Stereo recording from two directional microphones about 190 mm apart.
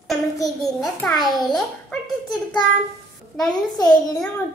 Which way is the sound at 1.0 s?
20° left (ahead or behind).